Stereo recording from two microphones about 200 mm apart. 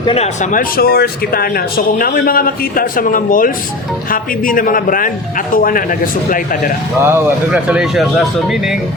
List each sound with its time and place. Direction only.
0.0 s speech: 25° left (ahead or behind)
0.5 s a man's voice: 50° left (ahead or behind)
7.0 s speech: 10° right (ahead or behind)